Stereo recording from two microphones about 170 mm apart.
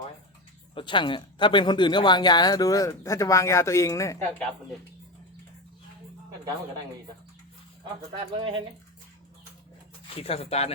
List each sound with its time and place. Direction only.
0.7 s speech: 30° left (ahead or behind)
8.4 s speech: 30° right (ahead or behind)
10.2 s speech: 35° left (ahead or behind)